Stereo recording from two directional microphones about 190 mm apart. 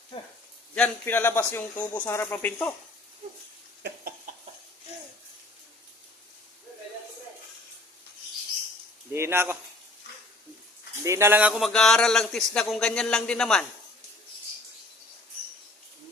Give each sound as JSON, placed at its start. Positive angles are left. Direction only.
{"t": 0.8, "sound": "a man's voice", "side_deg": 10}
{"t": 3.8, "sound": "a sound", "side_deg": -65}
{"t": 9.1, "sound": "speech", "side_deg": -15}
{"t": 11.0, "sound": "a man's voice", "side_deg": -15}